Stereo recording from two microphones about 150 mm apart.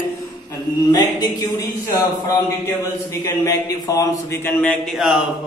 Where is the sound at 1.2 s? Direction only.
20° left (ahead or behind).